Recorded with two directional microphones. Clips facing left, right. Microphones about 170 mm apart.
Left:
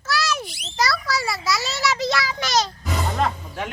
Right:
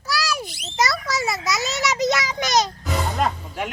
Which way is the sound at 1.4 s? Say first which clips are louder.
Even; 20° right (ahead or behind).